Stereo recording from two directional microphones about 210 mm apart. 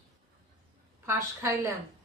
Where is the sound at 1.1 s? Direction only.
15° right (ahead or behind).